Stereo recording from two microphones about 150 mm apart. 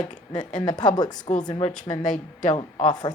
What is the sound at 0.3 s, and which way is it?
A woman's voice, 30° left (ahead or behind).